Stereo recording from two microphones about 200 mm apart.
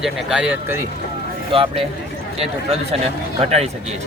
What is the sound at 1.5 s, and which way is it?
Speech, 25° right (ahead or behind).